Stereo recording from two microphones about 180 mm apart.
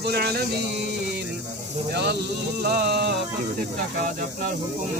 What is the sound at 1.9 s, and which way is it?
Speech, 65° right (ahead or behind).